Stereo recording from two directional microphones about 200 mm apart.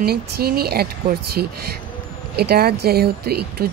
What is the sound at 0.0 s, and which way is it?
Speech, 50° right (ahead or behind).